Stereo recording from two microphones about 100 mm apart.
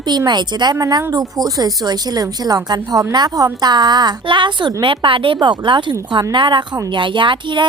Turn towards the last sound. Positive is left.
turn(degrees=-55)  # may be behind; listen again after turning